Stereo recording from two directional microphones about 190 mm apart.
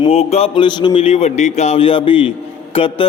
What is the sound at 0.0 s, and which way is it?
A man's voice, 30° left (ahead or behind).